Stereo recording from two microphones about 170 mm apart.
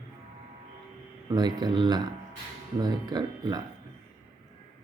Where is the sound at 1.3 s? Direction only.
25° right (ahead or behind).